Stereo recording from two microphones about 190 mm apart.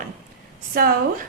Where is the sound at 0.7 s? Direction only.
50° right (ahead or behind).